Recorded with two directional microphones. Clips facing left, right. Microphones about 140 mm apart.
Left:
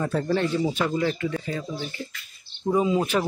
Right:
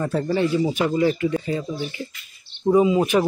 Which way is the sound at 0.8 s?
15° right (ahead or behind).